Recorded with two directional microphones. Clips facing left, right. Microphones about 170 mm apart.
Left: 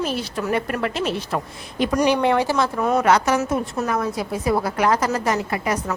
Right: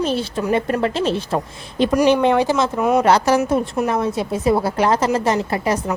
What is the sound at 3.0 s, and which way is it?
A woman's voice, 30° right (ahead or behind).